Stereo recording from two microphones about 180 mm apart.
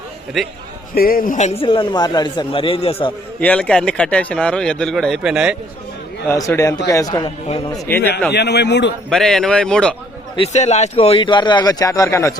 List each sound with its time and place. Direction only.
0.4 s speech: centre (ahead or behind)
0.9 s a man's voice: 55° left (ahead or behind)
1.6 s a man's voice: 25° left (ahead or behind)
3.4 s speech: 5° left (ahead or behind)
6.2 s a man's voice: 15° left (ahead or behind)
8.3 s a man's voice: 65° left (ahead or behind)
9.0 s speech: 5° left (ahead or behind)
10.3 s a man's voice: 35° left (ahead or behind); by 12.3 s 15° left (ahead or behind)